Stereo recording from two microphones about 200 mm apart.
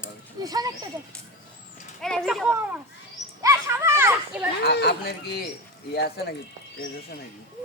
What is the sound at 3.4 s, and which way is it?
Children playing, 15° right (ahead or behind).